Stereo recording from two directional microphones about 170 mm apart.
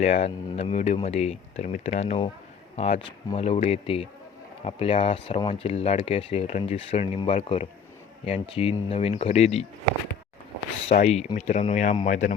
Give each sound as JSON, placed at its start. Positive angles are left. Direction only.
{"t": 0.0, "sound": "speech", "side_deg": 35}
{"t": 10.8, "sound": "speech", "side_deg": 40}